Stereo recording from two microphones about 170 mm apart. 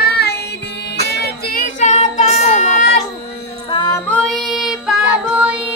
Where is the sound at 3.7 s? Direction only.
25° left (ahead or behind).